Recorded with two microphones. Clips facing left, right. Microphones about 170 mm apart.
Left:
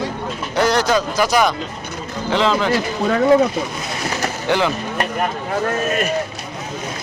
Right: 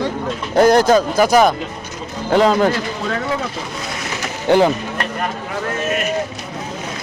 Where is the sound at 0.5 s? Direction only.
50° right (ahead or behind).